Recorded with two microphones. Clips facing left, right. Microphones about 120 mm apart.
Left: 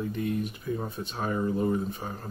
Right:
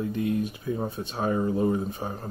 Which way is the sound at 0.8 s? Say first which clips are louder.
Right 4 dB; 20° right (ahead or behind).